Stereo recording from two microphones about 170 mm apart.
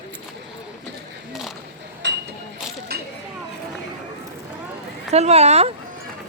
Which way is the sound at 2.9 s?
65° right (ahead or behind).